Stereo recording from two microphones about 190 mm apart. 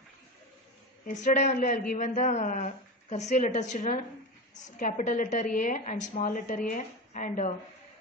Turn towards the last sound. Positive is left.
turn(degrees=40)  # may be behind; listen again after turning